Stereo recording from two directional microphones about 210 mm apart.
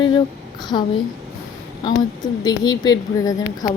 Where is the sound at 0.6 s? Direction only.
20° left (ahead or behind).